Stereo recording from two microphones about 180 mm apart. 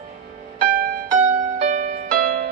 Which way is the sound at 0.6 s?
45° right (ahead or behind).